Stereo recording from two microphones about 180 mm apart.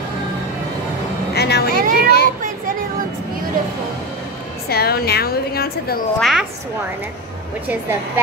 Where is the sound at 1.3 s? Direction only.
65° left (ahead or behind).